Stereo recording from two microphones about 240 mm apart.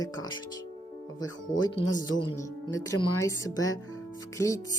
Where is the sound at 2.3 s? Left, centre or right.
Centre.